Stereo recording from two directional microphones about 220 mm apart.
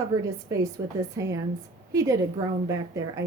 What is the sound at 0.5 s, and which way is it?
A woman's voice, 15° right (ahead or behind).